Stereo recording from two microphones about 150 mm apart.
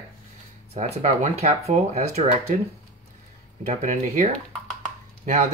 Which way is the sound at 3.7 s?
55° right (ahead or behind).